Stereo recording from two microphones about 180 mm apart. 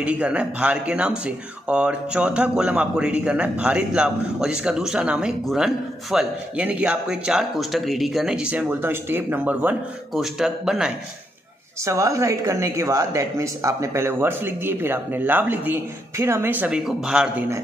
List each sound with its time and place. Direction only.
0.0 s speech: 5° right (ahead or behind)
11.8 s speech: 15° right (ahead or behind)